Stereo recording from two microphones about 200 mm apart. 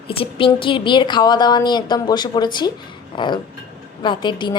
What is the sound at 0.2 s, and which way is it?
A woman's voice, 25° left (ahead or behind).